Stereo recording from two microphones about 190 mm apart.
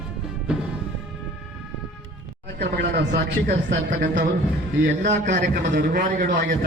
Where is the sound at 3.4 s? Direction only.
55° right (ahead or behind).